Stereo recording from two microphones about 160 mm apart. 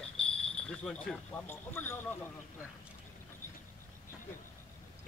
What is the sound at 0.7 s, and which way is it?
Speech, 5° left (ahead or behind).